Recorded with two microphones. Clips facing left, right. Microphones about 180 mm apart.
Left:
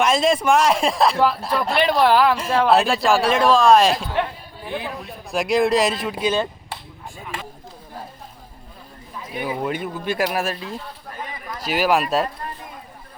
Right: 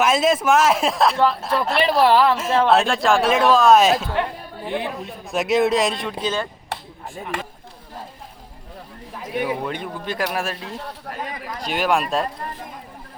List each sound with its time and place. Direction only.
0.0 s speech: 5° right (ahead or behind)
4.6 s speech: 20° right (ahead or behind)
5.3 s speech: centre (ahead or behind); by 6.5 s 15° left (ahead or behind)
9.1 s a sound: 70° right (ahead or behind)
9.5 s speech: 5° left (ahead or behind)
11.6 s speech: 5° left (ahead or behind)